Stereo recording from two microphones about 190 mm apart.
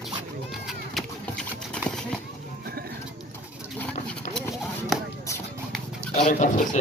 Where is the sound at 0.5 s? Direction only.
Centre (ahead or behind).